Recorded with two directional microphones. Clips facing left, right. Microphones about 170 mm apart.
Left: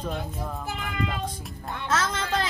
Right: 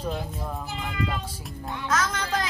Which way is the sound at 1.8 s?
25° left (ahead or behind).